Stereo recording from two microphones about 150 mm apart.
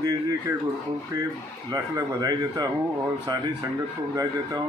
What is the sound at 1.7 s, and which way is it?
Speech, 25° right (ahead or behind).